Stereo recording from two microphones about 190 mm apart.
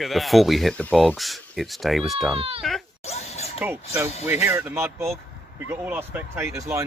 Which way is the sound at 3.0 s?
35° left (ahead or behind).